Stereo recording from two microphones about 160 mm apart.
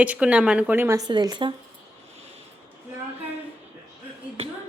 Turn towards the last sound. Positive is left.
turn(degrees=-40)  # may be behind; listen again after turning